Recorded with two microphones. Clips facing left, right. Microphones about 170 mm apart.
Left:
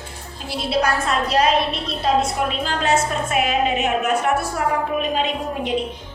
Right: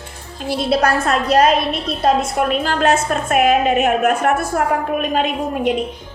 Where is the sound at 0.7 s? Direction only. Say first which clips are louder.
Right 3 dB; 50° right (ahead or behind).